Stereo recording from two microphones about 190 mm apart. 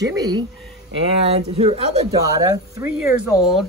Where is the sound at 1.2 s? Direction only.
30° right (ahead or behind).